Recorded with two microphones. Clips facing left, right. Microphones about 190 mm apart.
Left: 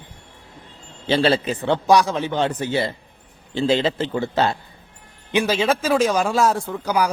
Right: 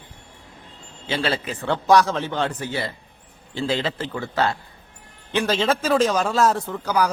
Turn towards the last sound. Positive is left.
turn(degrees=10)  # may be behind; listen again after turning